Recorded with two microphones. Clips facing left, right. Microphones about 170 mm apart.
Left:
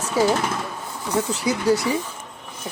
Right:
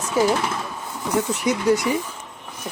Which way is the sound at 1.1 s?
30° left (ahead or behind).